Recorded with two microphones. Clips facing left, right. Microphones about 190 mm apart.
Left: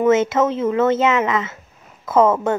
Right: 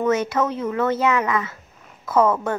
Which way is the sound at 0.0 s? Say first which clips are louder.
Left 5 dB; 25° left (ahead or behind).